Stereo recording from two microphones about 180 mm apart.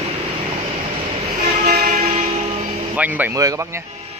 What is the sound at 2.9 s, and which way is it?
Speech, 10° right (ahead or behind).